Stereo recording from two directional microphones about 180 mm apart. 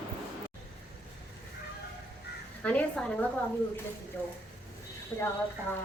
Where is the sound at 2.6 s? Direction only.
10° left (ahead or behind).